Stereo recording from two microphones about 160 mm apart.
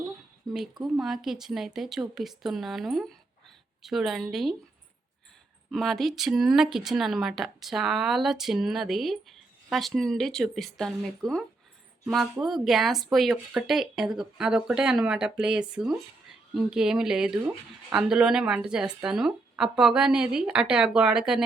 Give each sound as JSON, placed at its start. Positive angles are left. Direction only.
{"t": 0.4, "sound": "a sound", "side_deg": -25}
{"t": 0.9, "sound": "speech", "side_deg": 0}
{"t": 5.7, "sound": "speech", "side_deg": 0}